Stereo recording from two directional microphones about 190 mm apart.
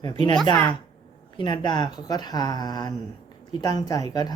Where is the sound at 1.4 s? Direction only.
25° left (ahead or behind).